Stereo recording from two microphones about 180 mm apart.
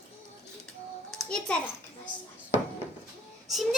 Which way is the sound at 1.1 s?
5° left (ahead or behind).